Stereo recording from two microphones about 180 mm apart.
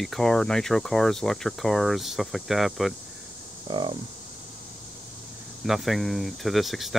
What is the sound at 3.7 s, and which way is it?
Speech, 25° right (ahead or behind).